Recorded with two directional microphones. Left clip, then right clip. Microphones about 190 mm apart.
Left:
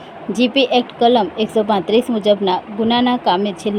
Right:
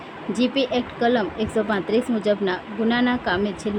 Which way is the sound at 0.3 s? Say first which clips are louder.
Left 8 dB; 15° left (ahead or behind).